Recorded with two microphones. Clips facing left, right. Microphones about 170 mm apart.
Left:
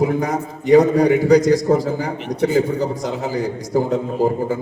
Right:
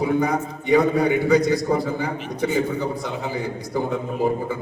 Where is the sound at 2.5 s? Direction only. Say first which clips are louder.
Left 5 dB; 40° left (ahead or behind).